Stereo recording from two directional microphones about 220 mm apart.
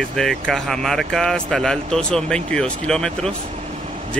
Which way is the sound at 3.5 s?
35° right (ahead or behind).